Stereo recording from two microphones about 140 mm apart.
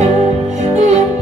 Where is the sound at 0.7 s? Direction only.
55° right (ahead or behind).